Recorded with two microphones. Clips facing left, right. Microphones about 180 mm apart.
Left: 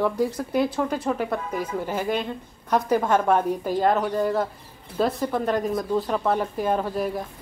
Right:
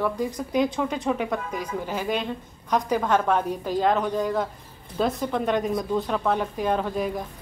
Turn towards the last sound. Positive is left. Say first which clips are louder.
# left 1 dB
turn(degrees=5)  # may be behind; listen again after turning